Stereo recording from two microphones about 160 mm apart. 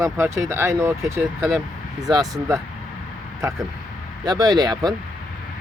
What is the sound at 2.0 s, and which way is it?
Speech, 25° right (ahead or behind).